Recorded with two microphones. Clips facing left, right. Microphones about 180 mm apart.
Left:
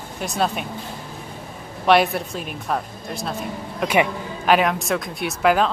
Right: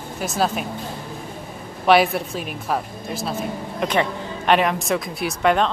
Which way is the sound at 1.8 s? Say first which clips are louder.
Right 1 dB; centre (ahead or behind).